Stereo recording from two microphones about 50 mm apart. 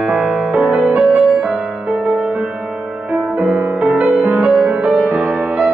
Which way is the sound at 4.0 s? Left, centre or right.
Right.